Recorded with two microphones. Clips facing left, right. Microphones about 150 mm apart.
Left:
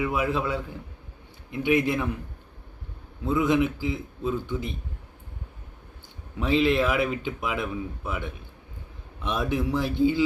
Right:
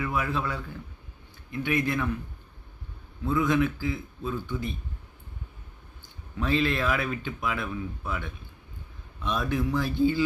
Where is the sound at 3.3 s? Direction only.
20° left (ahead or behind).